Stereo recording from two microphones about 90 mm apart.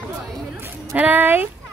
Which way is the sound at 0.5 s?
25° right (ahead or behind).